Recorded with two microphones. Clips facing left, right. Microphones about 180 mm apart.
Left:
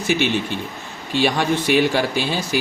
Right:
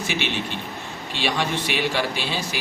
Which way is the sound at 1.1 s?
45° left (ahead or behind).